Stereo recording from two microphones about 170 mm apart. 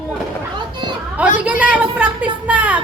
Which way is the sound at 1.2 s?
10° right (ahead or behind).